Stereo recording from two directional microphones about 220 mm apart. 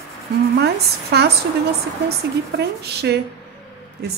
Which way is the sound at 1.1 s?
50° right (ahead or behind).